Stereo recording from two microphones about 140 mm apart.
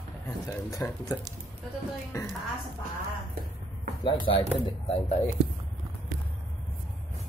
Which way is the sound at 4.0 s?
35° left (ahead or behind).